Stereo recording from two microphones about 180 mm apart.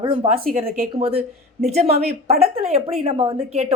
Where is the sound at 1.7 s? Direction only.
35° right (ahead or behind).